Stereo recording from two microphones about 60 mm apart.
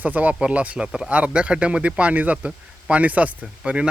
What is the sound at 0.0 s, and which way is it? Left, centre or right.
A man's voice, right.